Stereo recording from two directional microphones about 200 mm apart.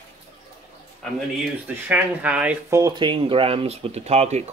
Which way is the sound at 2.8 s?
25° right (ahead or behind).